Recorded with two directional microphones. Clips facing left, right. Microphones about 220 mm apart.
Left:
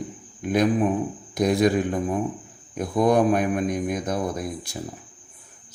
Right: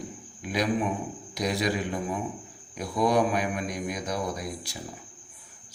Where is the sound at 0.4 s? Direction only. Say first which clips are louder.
Left 6 dB; 50° left (ahead or behind).